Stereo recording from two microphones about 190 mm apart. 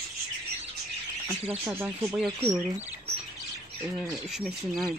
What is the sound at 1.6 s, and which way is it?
Speech, 15° right (ahead or behind).